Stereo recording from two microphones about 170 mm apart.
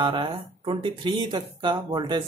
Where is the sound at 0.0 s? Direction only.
30° right (ahead or behind).